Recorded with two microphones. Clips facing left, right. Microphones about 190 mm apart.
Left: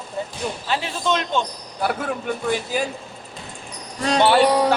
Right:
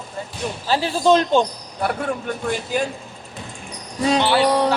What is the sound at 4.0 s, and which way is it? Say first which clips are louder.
Speech: right 2 dB; 5° right (ahead or behind).